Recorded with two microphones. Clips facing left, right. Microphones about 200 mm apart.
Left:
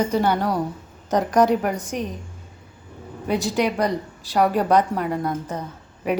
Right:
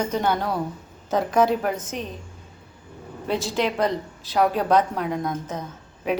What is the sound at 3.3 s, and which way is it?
A woman's voice, 15° left (ahead or behind).